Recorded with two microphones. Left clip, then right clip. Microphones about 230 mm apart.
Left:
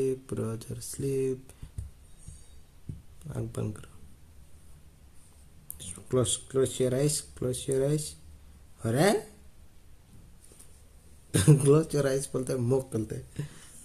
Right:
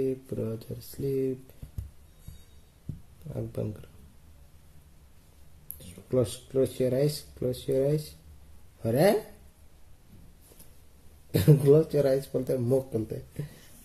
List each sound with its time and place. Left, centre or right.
0.3 s speech: left
5.8 s speech: left
11.3 s speech: left